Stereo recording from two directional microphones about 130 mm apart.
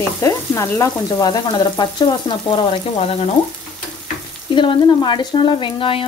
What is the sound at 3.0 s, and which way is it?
Frying, 55° left (ahead or behind).